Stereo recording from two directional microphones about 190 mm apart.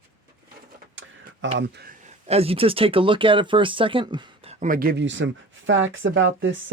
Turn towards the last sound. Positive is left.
turn(degrees=-85)